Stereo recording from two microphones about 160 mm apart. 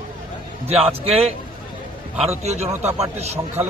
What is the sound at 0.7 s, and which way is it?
Speech, 40° right (ahead or behind).